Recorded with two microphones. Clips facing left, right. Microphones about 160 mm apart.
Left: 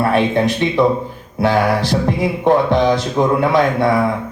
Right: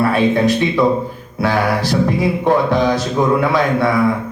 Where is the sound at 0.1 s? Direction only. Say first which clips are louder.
Right 1 dB; 20° left (ahead or behind).